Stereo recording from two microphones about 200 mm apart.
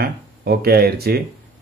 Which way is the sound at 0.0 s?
50° right (ahead or behind).